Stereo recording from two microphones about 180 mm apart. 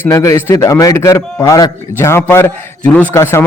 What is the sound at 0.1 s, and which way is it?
A man's voice, 20° left (ahead or behind).